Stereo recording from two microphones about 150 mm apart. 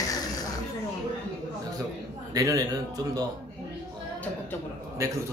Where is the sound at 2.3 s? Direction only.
25° right (ahead or behind).